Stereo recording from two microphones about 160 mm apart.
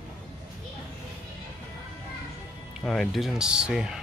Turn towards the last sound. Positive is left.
turn(degrees=-5)  # may be behind; listen again after turning